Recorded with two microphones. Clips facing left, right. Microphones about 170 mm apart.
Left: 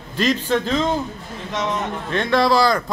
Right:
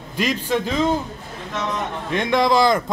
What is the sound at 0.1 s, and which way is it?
Speech, 10° right (ahead or behind).